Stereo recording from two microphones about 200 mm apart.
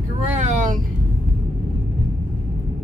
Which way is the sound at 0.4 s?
35° right (ahead or behind).